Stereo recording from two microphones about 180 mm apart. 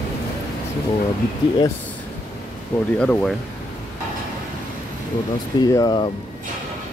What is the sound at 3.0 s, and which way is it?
Speech, 5° left (ahead or behind).